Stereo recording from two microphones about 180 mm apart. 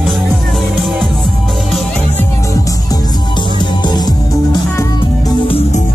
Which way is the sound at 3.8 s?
25° left (ahead or behind).